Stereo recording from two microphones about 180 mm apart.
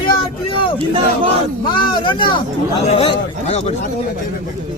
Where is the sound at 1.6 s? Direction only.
25° left (ahead or behind).